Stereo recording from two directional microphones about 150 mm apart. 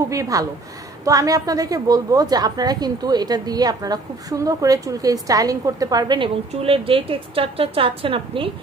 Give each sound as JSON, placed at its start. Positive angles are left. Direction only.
{"t": 0.1, "sound": "a woman's voice", "side_deg": -20}